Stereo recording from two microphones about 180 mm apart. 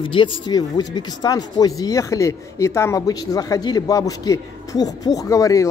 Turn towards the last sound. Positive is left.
turn(degrees=20)  # may be behind; listen again after turning